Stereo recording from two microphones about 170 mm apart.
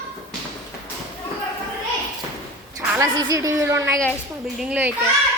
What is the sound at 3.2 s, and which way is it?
Speech, 20° right (ahead or behind).